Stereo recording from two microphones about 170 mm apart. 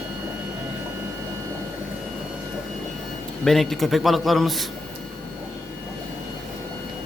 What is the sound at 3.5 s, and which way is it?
A man's voice, centre (ahead or behind).